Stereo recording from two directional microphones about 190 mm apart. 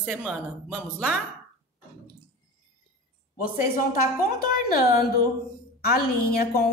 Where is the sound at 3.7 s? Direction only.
50° left (ahead or behind).